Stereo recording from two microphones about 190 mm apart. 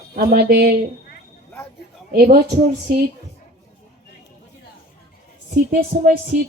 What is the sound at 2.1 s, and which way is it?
Music, 55° right (ahead or behind).